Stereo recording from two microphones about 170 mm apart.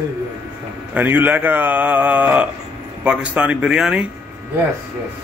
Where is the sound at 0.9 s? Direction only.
10° right (ahead or behind).